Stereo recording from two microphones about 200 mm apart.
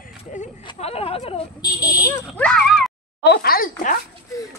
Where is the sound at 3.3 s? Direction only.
50° left (ahead or behind).